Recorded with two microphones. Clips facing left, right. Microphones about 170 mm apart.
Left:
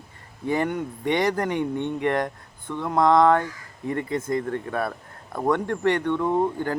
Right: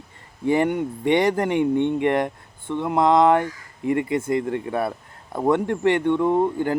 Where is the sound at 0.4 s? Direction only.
20° right (ahead or behind).